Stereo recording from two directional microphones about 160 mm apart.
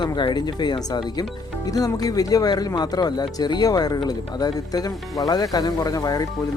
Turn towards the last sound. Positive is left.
turn(degrees=20)  # may be behind; listen again after turning